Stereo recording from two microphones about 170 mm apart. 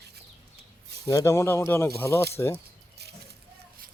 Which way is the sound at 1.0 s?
20° left (ahead or behind).